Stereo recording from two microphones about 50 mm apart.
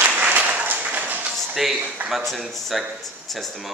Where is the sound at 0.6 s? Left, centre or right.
Right.